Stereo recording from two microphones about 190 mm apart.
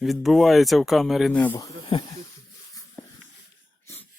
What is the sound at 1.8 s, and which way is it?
Speech, 25° left (ahead or behind).